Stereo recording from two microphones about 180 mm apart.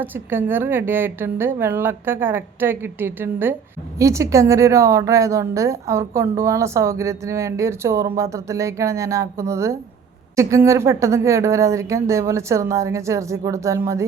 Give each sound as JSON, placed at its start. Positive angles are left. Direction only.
{"t": 0.0, "sound": "a woman's voice", "side_deg": -10}